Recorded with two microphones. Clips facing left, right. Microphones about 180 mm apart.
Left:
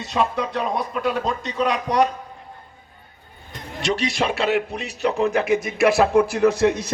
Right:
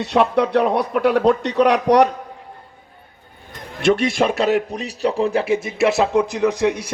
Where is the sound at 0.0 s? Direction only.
65° right (ahead or behind).